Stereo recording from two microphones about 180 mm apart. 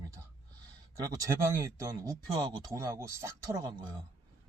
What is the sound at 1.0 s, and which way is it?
Speech, 15° right (ahead or behind).